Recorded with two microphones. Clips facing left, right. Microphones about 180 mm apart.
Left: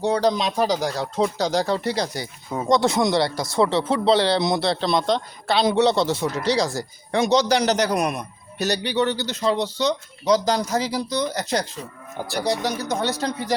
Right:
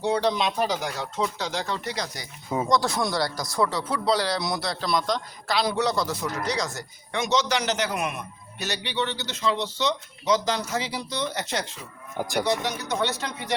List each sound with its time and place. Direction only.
0.0 s speech: 40° left (ahead or behind)